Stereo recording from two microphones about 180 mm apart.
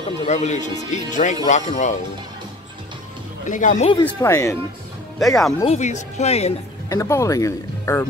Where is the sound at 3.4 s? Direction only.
45° left (ahead or behind).